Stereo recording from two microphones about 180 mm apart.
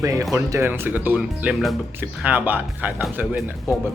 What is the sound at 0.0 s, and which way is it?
Speech, 20° right (ahead or behind).